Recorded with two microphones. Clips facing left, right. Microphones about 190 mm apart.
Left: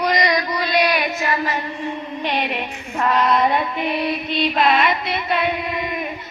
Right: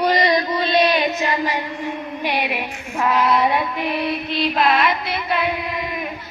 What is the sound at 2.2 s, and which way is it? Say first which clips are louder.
Female singing: even; 10° right (ahead or behind).